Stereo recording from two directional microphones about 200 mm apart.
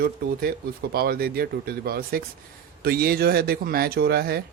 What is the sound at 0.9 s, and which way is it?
A man's voice, 50° right (ahead or behind).